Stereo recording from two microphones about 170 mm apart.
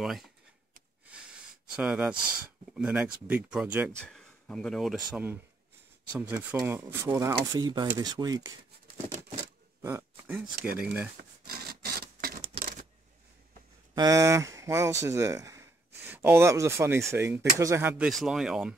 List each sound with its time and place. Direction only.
0.0 s speech: centre (ahead or behind)
1.1 s a sound: 5° right (ahead or behind)
2.7 s speech: 10° right (ahead or behind)
4.0 s speech: 5° left (ahead or behind)
6.3 s speech: 15° right (ahead or behind)
9.8 s speech: 15° right (ahead or behind)
11.4 s a sound: 65° right (ahead or behind)
13.9 s speech: 20° right (ahead or behind); by 18.8 s 5° right (ahead or behind)